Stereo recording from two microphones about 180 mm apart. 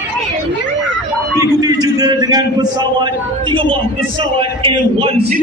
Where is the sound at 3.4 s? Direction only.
30° right (ahead or behind).